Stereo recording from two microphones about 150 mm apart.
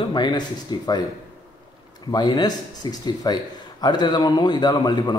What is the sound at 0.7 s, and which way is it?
Speech, 30° left (ahead or behind).